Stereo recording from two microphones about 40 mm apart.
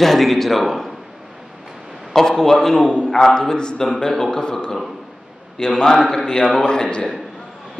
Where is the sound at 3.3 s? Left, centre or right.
Centre.